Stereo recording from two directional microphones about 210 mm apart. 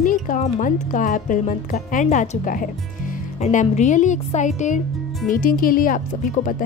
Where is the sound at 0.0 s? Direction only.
40° left (ahead or behind).